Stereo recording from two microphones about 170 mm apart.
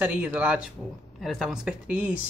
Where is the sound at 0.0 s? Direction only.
10° right (ahead or behind).